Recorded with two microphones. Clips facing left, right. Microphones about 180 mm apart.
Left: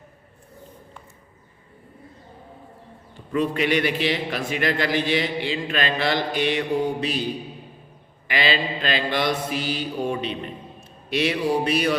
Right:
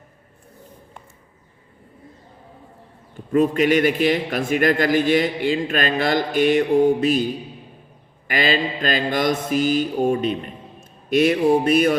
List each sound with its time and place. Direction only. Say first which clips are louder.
3.3 s a man's voice: right 5 dB; 45° right (ahead or behind)
8.3 s a man's voice: right 3 dB; 45° right (ahead or behind)